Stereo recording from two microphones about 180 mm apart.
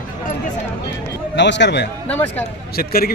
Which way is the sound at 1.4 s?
75° left (ahead or behind).